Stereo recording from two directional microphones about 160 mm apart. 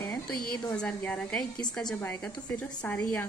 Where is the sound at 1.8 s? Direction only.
25° left (ahead or behind).